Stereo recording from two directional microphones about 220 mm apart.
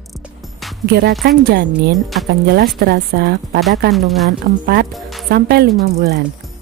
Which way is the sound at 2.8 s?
45° right (ahead or behind).